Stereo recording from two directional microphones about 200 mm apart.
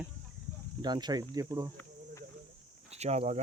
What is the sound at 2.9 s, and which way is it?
Speech, 30° right (ahead or behind).